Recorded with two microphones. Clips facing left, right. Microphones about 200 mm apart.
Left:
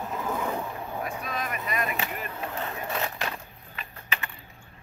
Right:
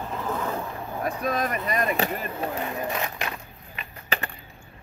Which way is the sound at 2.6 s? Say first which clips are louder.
Right 3 dB; 15° right (ahead or behind).